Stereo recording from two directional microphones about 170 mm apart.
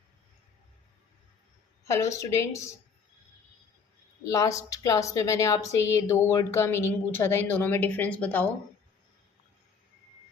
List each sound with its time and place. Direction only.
1.8 s a woman's voice: 15° left (ahead or behind)
4.2 s a woman's voice: 20° left (ahead or behind)